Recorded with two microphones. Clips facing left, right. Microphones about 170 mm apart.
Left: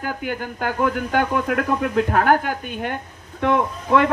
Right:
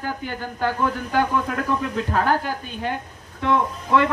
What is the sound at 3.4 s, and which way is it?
Speech, 55° left (ahead or behind).